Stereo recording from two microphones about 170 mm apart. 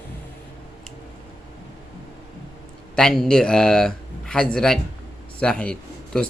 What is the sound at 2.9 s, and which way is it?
A man's voice, 5° left (ahead or behind).